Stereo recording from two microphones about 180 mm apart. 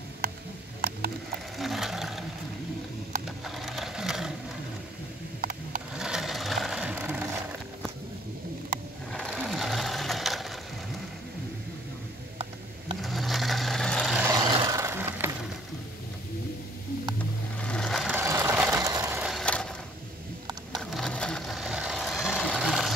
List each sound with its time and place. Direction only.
0.2 s a sound: 55° right (ahead or behind)
1.6 s a sound: centre (ahead or behind)
3.3 s a sound: centre (ahead or behind)
5.4 s a sound: 50° right (ahead or behind)
5.9 s sewing machine: 5° right (ahead or behind)
9.1 s sewing machine: centre (ahead or behind)
13.0 s vehicle: centre (ahead or behind)
14.2 s vehicle: 20° right (ahead or behind)
17.6 s sewing machine: 5° left (ahead or behind)
18.1 s vehicle: 15° right (ahead or behind)
19.2 s vehicle: 5° left (ahead or behind)
20.9 s vehicle: 5° left (ahead or behind)